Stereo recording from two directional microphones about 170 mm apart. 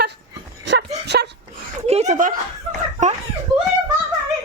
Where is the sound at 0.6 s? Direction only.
90° right.